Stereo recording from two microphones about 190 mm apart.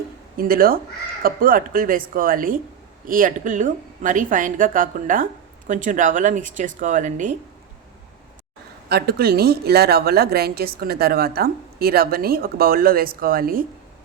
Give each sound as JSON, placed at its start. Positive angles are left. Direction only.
{"t": 0.3, "sound": "a woman's voice", "side_deg": -50}
{"t": 8.9, "sound": "a woman's voice", "side_deg": -55}